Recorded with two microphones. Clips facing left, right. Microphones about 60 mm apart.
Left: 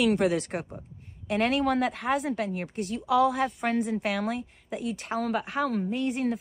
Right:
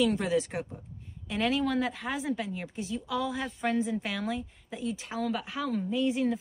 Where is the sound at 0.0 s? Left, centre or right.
Left.